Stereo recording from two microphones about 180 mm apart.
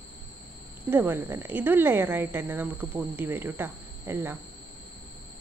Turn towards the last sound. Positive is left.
turn(degrees=-10)  # may be behind; listen again after turning